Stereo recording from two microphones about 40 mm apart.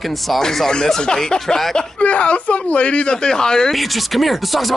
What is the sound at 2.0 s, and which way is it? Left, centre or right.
Speech, left.